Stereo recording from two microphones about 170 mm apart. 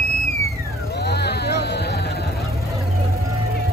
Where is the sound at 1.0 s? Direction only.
75° left (ahead or behind).